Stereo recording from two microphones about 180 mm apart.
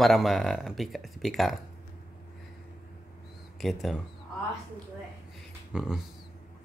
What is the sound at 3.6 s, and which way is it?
Speech, centre (ahead or behind).